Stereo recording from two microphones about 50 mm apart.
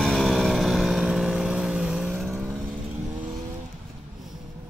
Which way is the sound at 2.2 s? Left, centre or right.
Centre.